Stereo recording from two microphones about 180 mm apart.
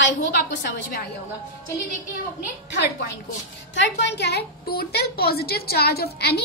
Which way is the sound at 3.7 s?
80° left.